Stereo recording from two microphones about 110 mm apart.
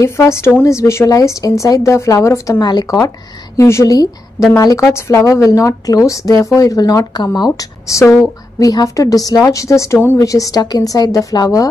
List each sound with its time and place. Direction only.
0.0 s a woman's voice: 25° left (ahead or behind)
2.6 s a woman's voice: 40° left (ahead or behind)